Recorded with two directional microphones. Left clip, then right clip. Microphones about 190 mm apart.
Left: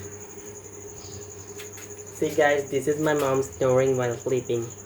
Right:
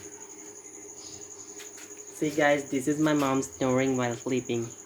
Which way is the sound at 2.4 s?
55° right (ahead or behind).